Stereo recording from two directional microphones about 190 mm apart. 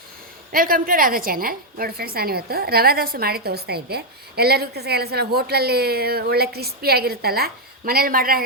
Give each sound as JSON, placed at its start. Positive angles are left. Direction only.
{"t": 0.5, "sound": "a woman's voice", "side_deg": -50}